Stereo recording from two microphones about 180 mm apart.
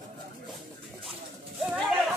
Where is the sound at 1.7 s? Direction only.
Centre (ahead or behind).